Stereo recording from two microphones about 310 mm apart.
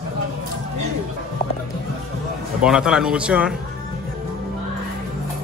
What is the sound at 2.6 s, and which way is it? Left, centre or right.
Speech, centre.